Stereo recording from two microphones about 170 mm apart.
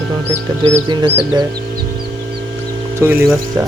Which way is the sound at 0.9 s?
25° right (ahead or behind).